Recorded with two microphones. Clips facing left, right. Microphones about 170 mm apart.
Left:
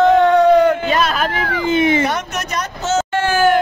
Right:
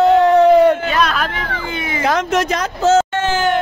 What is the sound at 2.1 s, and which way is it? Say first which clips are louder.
Speech: right 6 dB; 90° right.